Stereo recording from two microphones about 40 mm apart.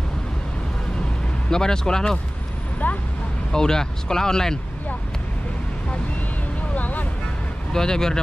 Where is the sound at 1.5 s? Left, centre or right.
Centre.